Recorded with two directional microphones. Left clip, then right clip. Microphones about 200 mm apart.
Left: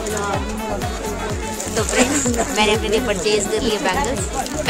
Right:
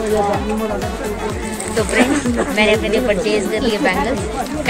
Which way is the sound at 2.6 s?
20° left (ahead or behind).